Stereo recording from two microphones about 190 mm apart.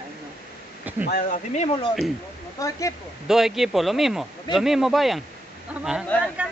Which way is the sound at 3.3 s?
Centre (ahead or behind).